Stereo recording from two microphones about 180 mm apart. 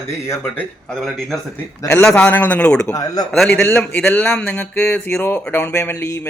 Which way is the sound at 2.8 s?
20° left (ahead or behind).